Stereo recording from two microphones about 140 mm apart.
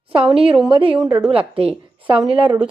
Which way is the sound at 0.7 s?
35° right (ahead or behind).